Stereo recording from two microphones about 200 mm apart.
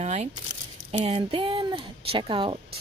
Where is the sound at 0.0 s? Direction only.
35° right (ahead or behind).